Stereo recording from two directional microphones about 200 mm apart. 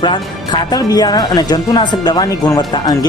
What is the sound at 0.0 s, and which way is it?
Speech, 20° left (ahead or behind).